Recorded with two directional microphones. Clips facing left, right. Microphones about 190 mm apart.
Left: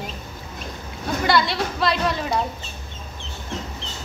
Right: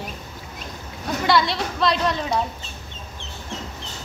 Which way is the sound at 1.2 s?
Centre (ahead or behind).